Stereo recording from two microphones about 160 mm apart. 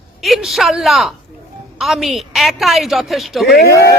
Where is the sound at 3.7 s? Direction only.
20° left (ahead or behind).